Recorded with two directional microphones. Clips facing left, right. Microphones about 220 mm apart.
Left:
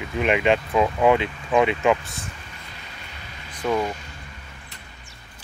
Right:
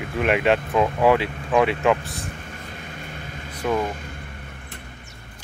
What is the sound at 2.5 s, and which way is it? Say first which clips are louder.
Vehicle: right 6 dB; 50° right (ahead or behind).